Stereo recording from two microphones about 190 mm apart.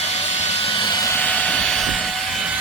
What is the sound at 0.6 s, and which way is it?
Vehicle, 25° left (ahead or behind).